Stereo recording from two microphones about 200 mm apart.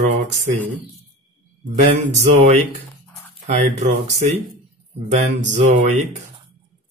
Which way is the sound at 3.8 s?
35° right (ahead or behind).